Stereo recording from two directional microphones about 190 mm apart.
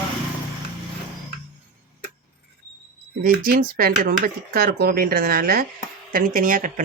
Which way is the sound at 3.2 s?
50° right (ahead or behind).